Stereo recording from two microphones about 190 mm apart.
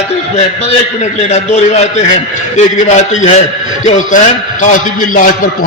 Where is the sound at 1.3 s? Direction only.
35° left (ahead or behind).